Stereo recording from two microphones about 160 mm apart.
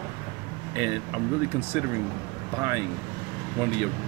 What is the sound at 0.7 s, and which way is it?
Speech, 20° right (ahead or behind).